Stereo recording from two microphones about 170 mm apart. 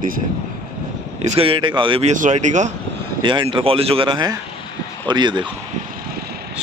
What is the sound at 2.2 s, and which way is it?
Speech, 45° right (ahead or behind).